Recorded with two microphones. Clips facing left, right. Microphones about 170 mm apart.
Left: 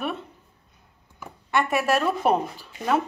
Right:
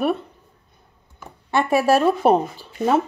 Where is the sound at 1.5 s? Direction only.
30° right (ahead or behind).